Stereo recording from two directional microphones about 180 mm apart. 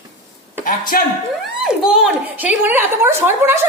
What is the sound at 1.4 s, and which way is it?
A woman's voice, centre (ahead or behind).